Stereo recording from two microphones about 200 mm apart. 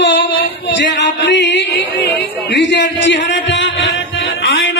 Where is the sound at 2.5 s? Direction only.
60° left (ahead or behind).